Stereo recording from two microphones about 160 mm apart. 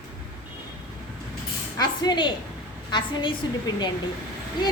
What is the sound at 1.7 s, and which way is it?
A woman's voice, 25° left (ahead or behind).